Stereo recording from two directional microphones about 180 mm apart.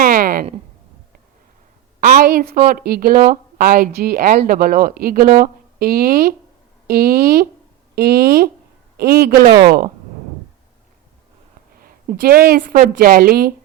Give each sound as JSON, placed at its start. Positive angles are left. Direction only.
{"t": 0.0, "sound": "a sound", "side_deg": -50}
{"t": 2.0, "sound": "a woman's voice", "side_deg": -50}
{"t": 9.5, "sound": "speech", "side_deg": -25}
{"t": 12.2, "sound": "a woman's voice", "side_deg": -55}